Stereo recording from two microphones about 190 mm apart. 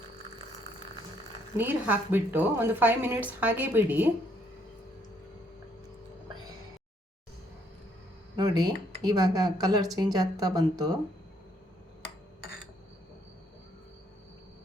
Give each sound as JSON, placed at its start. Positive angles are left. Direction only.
{"t": 1.5, "sound": "speech", "side_deg": -10}
{"t": 8.4, "sound": "speech", "side_deg": -20}